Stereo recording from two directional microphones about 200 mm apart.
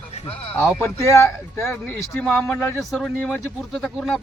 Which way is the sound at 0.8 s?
15° left (ahead or behind).